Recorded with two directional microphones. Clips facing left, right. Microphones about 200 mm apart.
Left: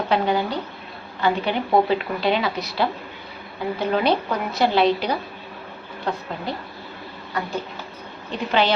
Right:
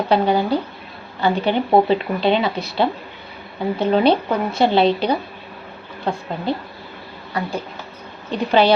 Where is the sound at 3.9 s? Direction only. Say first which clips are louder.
Right 5 dB; 30° right (ahead or behind).